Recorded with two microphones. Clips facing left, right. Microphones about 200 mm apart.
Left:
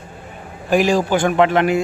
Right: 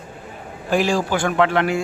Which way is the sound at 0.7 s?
15° left (ahead or behind).